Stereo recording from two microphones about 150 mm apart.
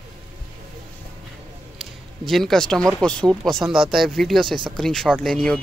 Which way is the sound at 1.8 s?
Centre (ahead or behind).